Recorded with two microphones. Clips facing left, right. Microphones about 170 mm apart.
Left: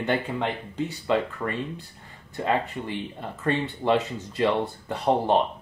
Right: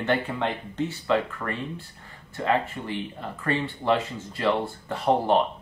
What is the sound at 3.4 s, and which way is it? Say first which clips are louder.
Speech: left 1 dB; 20° left (ahead or behind).